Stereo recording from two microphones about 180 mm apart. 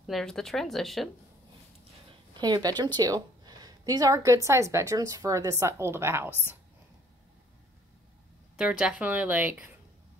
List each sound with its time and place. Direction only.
0.0 s speech: centre (ahead or behind)
2.3 s a woman's voice: 20° right (ahead or behind)
8.5 s a woman's voice: 5° right (ahead or behind)